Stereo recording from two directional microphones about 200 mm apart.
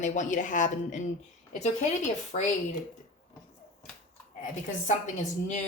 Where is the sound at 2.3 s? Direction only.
40° left (ahead or behind).